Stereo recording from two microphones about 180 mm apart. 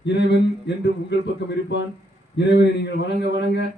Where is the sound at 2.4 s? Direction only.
70° left (ahead or behind).